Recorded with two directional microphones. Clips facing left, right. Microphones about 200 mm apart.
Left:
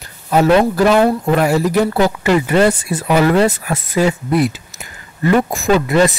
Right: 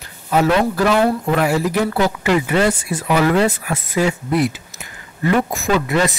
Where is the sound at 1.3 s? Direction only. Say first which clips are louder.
Left 3 dB; 40° left (ahead or behind).